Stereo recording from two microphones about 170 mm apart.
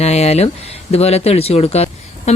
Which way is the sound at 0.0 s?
40° left (ahead or behind).